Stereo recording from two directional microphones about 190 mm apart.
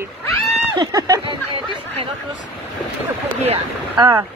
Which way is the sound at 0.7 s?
20° right (ahead or behind).